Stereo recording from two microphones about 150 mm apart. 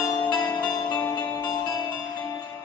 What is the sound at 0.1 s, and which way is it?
Music, 30° left (ahead or behind).